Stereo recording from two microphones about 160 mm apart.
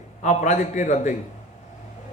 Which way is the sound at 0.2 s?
50° left (ahead or behind).